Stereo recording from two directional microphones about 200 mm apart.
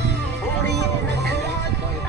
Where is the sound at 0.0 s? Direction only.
60° right (ahead or behind).